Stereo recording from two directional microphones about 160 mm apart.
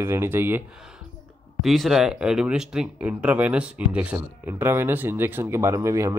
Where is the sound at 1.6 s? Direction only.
Centre (ahead or behind).